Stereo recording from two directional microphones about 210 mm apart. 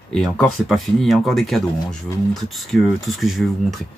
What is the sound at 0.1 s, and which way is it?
Speech, centre (ahead or behind).